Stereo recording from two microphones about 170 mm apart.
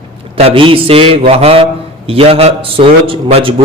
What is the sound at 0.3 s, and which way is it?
A man's voice, 35° right (ahead or behind).